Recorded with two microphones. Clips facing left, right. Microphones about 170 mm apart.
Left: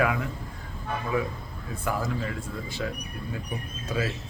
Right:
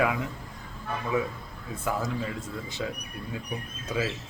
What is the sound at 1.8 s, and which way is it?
Speech, 20° right (ahead or behind).